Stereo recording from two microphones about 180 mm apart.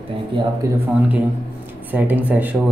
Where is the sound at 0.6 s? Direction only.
15° right (ahead or behind).